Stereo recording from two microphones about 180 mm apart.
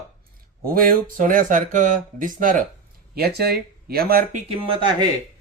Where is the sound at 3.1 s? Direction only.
60° right (ahead or behind).